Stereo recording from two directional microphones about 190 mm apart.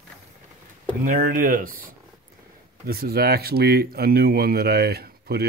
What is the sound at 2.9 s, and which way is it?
Speech, 55° right (ahead or behind).